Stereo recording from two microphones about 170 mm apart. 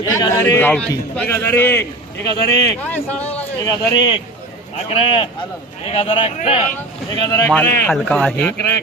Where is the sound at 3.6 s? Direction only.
25° left (ahead or behind).